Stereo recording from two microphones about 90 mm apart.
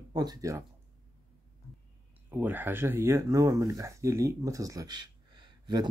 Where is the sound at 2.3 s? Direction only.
20° right (ahead or behind); by 5.9 s 55° right (ahead or behind).